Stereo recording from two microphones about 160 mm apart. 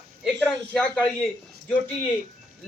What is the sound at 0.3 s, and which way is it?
Speech, 10° left (ahead or behind).